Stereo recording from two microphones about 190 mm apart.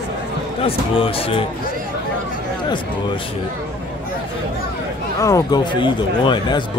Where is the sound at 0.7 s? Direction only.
30° left (ahead or behind).